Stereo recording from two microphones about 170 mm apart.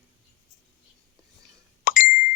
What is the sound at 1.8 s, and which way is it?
Plop, 50° left (ahead or behind).